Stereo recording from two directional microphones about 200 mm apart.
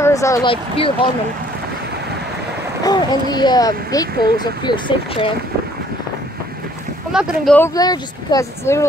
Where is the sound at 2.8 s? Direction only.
20° left (ahead or behind).